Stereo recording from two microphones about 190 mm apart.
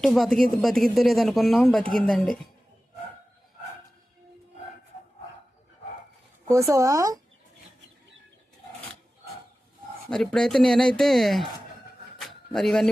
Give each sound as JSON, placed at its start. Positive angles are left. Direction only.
{"t": 0.0, "sound": "speech", "side_deg": 0}
{"t": 6.5, "sound": "speech", "side_deg": -15}
{"t": 10.1, "sound": "speech", "side_deg": 5}
{"t": 12.1, "sound": "a sound", "side_deg": 0}